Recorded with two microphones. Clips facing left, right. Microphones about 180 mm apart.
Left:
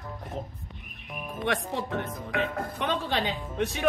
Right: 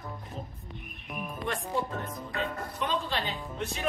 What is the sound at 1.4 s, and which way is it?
Speech, 75° left (ahead or behind).